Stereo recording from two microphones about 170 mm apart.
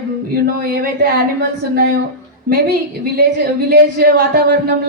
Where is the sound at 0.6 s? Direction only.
60° right (ahead or behind).